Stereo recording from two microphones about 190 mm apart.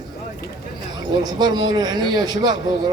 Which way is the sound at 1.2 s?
20° right (ahead or behind).